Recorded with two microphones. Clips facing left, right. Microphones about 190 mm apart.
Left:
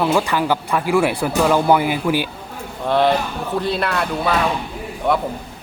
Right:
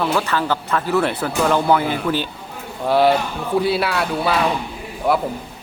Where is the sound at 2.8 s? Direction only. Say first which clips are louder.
Right 1 dB; 5° right (ahead or behind).